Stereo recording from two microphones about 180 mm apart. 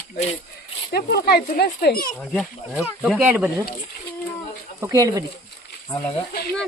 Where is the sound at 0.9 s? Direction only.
60° left (ahead or behind).